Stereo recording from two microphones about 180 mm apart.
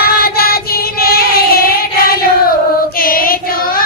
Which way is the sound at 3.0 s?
55° left (ahead or behind).